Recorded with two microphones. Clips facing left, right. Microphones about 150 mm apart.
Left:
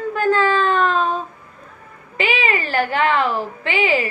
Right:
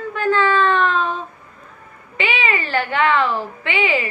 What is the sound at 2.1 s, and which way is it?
Speech, 40° left (ahead or behind).